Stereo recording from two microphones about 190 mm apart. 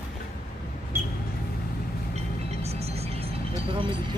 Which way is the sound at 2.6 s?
35° right (ahead or behind).